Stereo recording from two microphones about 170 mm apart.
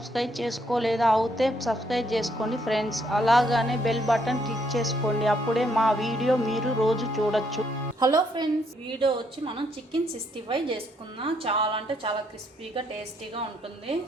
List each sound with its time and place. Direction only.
0.1 s a woman's voice: centre (ahead or behind)
7.9 s a woman's voice: 25° right (ahead or behind)
11.2 s a woman's voice: 30° right (ahead or behind)